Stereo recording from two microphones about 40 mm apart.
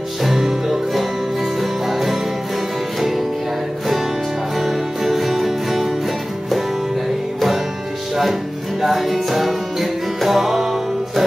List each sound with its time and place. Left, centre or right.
0.2 s music: centre
4.6 s music: centre
8.8 s music: centre